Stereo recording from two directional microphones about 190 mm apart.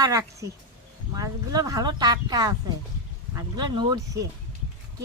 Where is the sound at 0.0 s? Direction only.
15° right (ahead or behind).